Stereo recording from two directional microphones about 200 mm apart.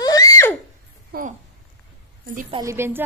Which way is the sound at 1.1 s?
50° right (ahead or behind).